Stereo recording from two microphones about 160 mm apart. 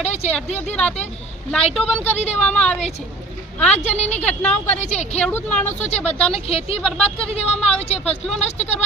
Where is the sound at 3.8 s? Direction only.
40° left (ahead or behind).